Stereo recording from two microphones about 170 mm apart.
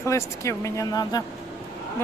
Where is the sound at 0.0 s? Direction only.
15° left (ahead or behind).